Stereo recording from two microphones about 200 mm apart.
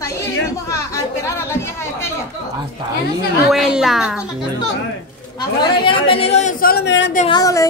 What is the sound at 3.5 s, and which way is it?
Speech, centre (ahead or behind).